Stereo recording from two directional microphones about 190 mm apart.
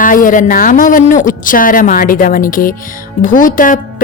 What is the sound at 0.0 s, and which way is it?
Speech, 45° left (ahead or behind).